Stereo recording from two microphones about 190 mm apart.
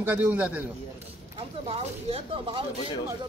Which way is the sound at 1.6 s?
30° right (ahead or behind).